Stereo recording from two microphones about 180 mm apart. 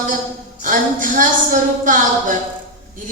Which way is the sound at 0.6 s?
50° right (ahead or behind).